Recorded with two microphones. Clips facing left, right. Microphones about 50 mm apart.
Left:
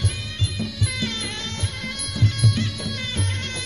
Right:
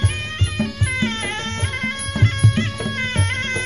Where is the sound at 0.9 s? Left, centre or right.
Right.